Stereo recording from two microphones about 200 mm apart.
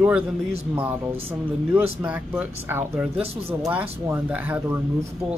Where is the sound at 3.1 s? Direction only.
30° right (ahead or behind).